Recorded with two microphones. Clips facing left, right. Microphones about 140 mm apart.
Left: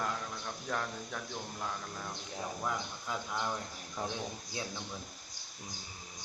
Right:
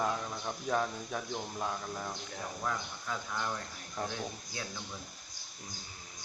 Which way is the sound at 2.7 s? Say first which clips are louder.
Right 2 dB; 15° left (ahead or behind).